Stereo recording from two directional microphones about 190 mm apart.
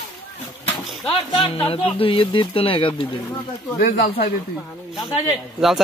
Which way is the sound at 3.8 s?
45° left (ahead or behind).